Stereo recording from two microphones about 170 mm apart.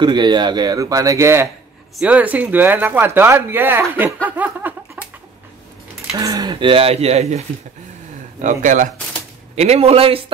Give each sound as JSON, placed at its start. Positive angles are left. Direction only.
{"t": 0.0, "sound": "speech", "side_deg": -25}
{"t": 5.0, "sound": "chicken", "side_deg": -10}
{"t": 6.1, "sound": "speech", "side_deg": -20}
{"t": 9.6, "sound": "speech", "side_deg": -40}